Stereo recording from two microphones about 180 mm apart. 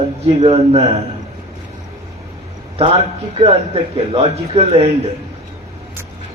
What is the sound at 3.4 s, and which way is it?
A man's voice, 30° right (ahead or behind).